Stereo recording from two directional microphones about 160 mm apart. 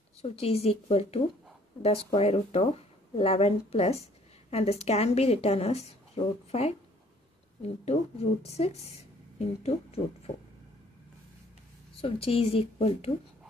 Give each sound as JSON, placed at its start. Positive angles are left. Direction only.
{"t": 0.2, "sound": "a woman's voice", "side_deg": 40}
{"t": 12.0, "sound": "a woman's voice", "side_deg": 35}